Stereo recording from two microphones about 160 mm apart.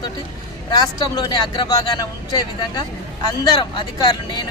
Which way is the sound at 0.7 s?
25° left (ahead or behind).